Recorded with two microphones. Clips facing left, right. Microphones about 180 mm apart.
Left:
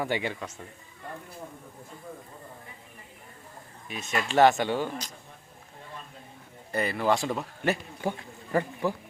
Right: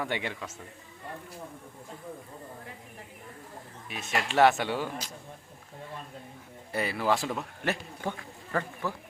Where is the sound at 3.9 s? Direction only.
Centre (ahead or behind).